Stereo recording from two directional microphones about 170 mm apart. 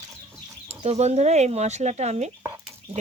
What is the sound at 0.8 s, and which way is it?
Speech, 40° right (ahead or behind).